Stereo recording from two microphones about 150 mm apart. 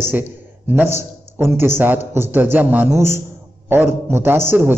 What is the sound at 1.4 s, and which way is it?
A man's voice, 15° right (ahead or behind).